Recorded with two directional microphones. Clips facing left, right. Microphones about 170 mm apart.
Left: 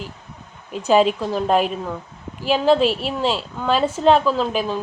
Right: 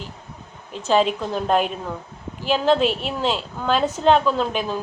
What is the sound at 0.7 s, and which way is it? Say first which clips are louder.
A woman's voice: left 3 dB; 10° left (ahead or behind).